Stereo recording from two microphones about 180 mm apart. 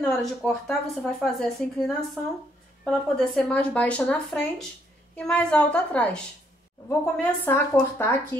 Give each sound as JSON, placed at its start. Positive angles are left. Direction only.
{"t": 0.2, "sound": "speech", "side_deg": 5}